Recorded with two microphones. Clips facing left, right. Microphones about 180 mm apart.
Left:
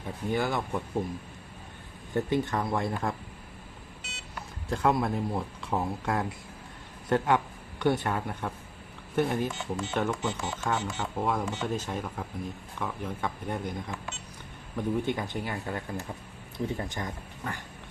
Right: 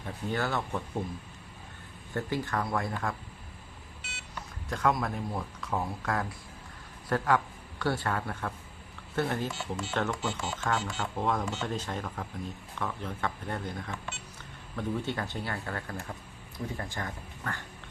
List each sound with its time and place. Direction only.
0.0 s speech: 15° left (ahead or behind)
2.1 s speech: 20° left (ahead or behind)
4.7 s a man's voice: 30° left (ahead or behind)